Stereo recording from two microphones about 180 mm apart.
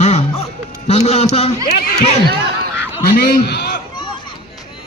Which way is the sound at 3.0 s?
60° left (ahead or behind).